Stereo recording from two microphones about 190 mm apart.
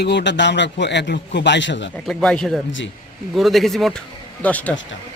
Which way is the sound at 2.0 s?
5° left (ahead or behind).